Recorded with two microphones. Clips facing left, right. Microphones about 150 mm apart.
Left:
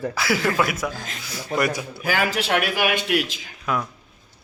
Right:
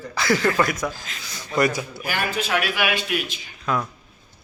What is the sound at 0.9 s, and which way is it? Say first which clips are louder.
Speech: left 4 dB; 55° left (ahead or behind).